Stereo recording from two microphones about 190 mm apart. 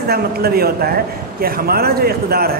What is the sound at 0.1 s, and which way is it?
A man's voice, 55° right (ahead or behind).